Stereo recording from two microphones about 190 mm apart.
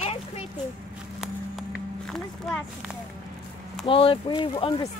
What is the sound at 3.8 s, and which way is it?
Speech, 30° left (ahead or behind).